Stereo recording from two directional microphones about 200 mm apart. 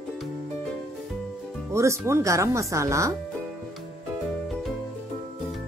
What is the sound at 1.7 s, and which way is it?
Speech, 15° right (ahead or behind).